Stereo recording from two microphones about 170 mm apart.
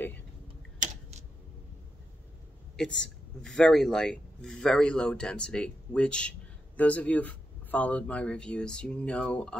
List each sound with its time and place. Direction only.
0.8 s typing: 45° right (ahead or behind)
3.0 s a man's voice: 5° left (ahead or behind)